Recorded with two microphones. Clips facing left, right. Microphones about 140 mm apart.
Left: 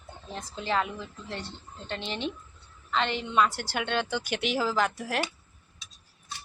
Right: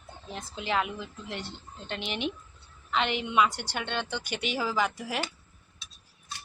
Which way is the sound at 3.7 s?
5° left (ahead or behind).